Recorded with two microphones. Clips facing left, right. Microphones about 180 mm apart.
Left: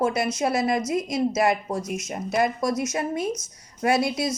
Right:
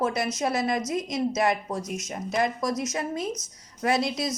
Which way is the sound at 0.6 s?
60° left (ahead or behind).